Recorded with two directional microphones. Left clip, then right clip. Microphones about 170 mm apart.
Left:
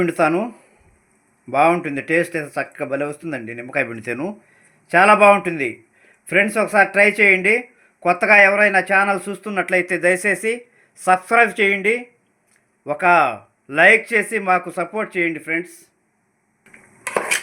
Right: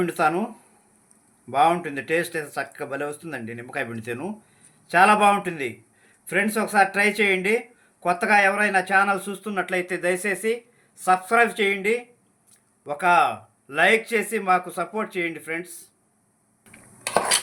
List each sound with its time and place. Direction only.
0.0 s speech: 40° left (ahead or behind)